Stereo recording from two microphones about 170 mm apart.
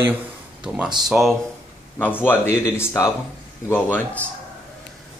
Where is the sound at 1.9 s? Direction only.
10° left (ahead or behind).